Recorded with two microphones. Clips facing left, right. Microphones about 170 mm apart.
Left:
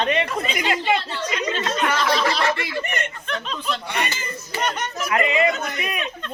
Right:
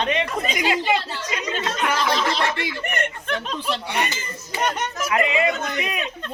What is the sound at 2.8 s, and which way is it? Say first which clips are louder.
Speech: right 2 dB; 55° right (ahead or behind).